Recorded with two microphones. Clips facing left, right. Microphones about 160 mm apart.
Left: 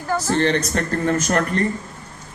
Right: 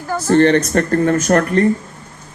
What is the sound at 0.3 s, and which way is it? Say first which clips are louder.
Speech: right 9 dB; 55° right (ahead or behind).